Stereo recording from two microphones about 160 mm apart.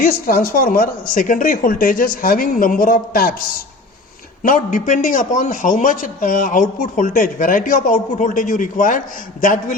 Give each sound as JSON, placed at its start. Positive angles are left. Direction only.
{"t": 0.0, "sound": "a man's voice", "side_deg": 65}
{"t": 4.4, "sound": "a man's voice", "side_deg": 55}